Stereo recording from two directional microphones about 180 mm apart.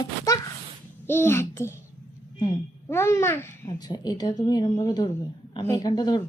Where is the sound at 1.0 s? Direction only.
10° left (ahead or behind).